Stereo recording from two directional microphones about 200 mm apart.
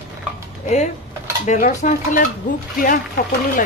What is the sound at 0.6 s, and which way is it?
Speech, 35° left (ahead or behind).